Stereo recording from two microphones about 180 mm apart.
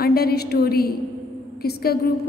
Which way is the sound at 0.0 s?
60° left (ahead or behind).